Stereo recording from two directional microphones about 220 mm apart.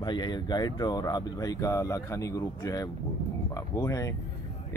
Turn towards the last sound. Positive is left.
turn(degrees=15)  # may be behind; listen again after turning